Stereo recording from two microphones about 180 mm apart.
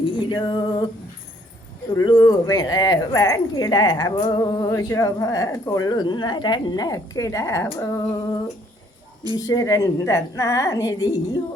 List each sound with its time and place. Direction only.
0.0 s music: 25° left (ahead or behind)
2.0 s speech: 20° left (ahead or behind)
9.3 s a woman's voice: 20° left (ahead or behind)